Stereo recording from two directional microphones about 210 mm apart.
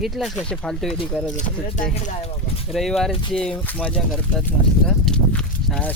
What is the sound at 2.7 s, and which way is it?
Speech, centre (ahead or behind).